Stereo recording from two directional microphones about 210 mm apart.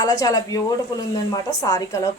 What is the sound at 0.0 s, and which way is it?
Speech, 15° left (ahead or behind).